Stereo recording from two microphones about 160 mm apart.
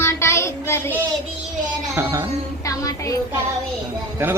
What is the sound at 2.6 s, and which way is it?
Child singing, 20° left (ahead or behind).